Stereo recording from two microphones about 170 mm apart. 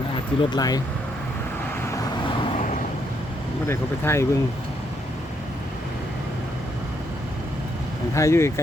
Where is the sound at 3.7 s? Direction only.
15° left (ahead or behind).